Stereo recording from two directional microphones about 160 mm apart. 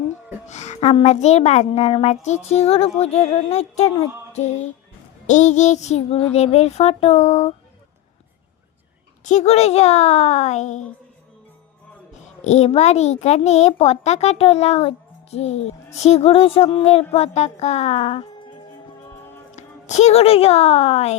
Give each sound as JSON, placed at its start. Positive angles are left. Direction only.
{"t": 0.4, "sound": "a child's voice", "side_deg": 45}
{"t": 5.2, "sound": "a child's voice", "side_deg": 50}
{"t": 9.2, "sound": "a child's voice", "side_deg": 45}
{"t": 12.5, "sound": "a child's voice", "side_deg": 45}